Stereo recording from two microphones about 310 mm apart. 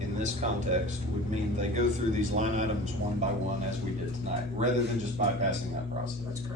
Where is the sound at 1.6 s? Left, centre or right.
Right.